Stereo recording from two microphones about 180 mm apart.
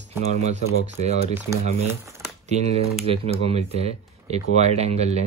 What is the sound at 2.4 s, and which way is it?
Speech, 40° right (ahead or behind).